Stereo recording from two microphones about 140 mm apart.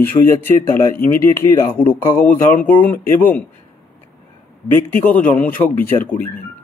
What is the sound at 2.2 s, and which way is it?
A man's voice, 10° left (ahead or behind).